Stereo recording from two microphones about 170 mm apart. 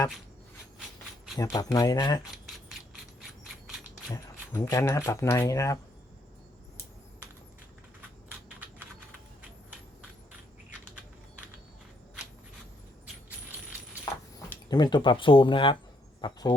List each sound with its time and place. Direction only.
1.4 s speech: 20° left (ahead or behind)
2.3 s mechanisms: centre (ahead or behind)
4.1 s speech: 20° left (ahead or behind)
14.7 s speech: 25° left (ahead or behind)